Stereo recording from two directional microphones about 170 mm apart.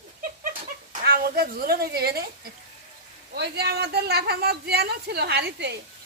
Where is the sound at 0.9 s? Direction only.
60° right (ahead or behind).